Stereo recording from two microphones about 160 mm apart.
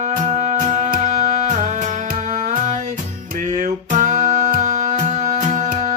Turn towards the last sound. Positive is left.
turn(degrees=-50)  # may be behind; listen again after turning